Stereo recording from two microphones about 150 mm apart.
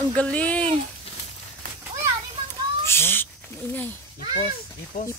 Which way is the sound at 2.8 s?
15° left (ahead or behind).